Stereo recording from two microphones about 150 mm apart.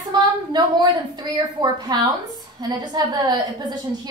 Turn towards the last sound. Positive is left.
turn(degrees=-25)  # may be behind; listen again after turning